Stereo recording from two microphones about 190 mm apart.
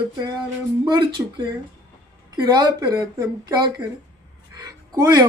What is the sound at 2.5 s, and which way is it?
Speech, 20° right (ahead or behind).